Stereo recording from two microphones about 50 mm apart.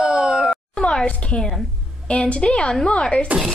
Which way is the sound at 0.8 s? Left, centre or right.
Centre.